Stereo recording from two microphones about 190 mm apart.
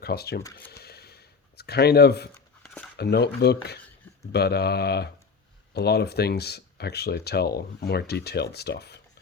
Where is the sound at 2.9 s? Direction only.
60° left (ahead or behind).